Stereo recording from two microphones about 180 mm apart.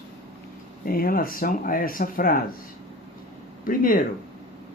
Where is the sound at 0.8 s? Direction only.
55° left (ahead or behind).